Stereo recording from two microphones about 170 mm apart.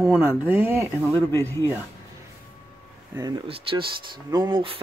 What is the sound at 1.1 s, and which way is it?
Speech, 15° left (ahead or behind).